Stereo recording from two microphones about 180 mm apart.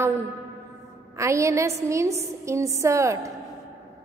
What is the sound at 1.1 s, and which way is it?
A woman's voice, 15° right (ahead or behind).